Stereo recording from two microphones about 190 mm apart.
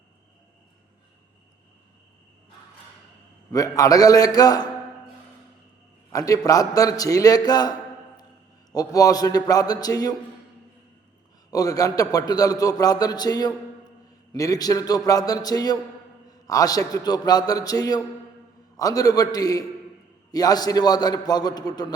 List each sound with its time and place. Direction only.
3.5 s a man's voice: 20° left (ahead or behind)
6.1 s a man's voice: 20° left (ahead or behind)
8.7 s a man's voice: 20° left (ahead or behind)
11.5 s a man's voice: 20° left (ahead or behind)